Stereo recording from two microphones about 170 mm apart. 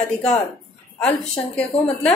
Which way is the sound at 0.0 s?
Centre (ahead or behind).